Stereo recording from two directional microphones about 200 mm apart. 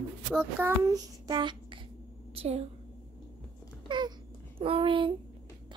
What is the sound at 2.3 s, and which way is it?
Speech, 30° right (ahead or behind).